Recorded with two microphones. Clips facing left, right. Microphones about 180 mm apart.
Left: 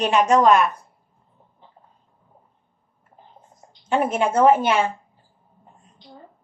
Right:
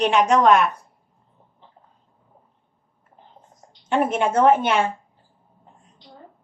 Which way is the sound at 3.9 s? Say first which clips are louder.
Even; centre (ahead or behind).